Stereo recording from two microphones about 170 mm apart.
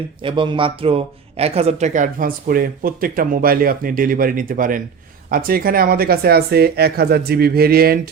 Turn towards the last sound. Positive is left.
turn(degrees=-65)  # may be behind; listen again after turning